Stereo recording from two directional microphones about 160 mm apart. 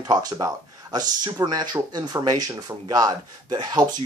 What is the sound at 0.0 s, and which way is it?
Speech, 25° right (ahead or behind).